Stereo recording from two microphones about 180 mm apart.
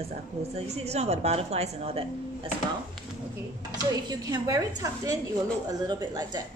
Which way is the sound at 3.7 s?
20° right (ahead or behind).